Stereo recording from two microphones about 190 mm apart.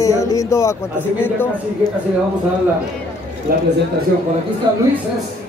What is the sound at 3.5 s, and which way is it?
Speech, 50° right (ahead or behind).